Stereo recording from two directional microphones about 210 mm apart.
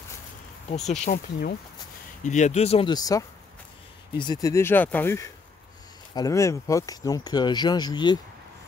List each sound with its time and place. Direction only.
0.7 s speech: centre (ahead or behind)
1.0 s speech: 40° left (ahead or behind); by 8.2 s 20° left (ahead or behind)